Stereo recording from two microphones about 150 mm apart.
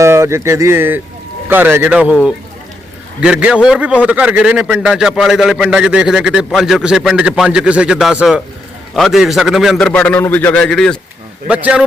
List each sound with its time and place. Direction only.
0.0 s a man's voice: 20° right (ahead or behind); by 10.9 s 5° left (ahead or behind)
11.4 s speech: 10° right (ahead or behind)